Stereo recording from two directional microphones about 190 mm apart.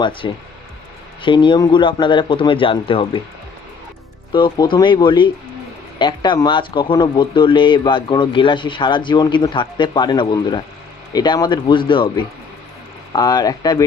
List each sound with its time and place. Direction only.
0.2 s speech: 25° left (ahead or behind)
4.3 s speech: 25° left (ahead or behind)